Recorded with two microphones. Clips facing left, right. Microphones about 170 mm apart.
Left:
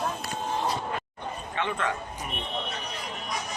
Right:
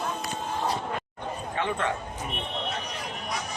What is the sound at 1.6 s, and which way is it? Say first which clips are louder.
Speech: right 1 dB; 30° right (ahead or behind).